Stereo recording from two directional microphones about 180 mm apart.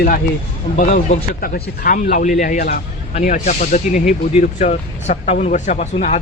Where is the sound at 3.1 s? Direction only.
40° left (ahead or behind).